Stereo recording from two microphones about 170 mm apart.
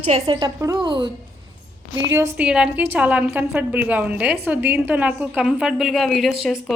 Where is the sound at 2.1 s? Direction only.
15° right (ahead or behind).